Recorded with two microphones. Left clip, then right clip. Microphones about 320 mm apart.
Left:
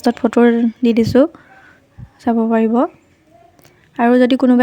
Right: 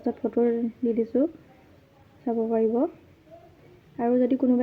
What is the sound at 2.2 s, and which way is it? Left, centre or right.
Speech, left.